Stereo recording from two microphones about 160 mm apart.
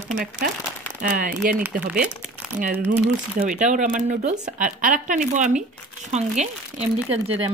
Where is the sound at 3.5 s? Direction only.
50° right (ahead or behind).